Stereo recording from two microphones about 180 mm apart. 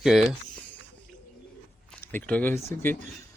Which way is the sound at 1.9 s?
10° left (ahead or behind).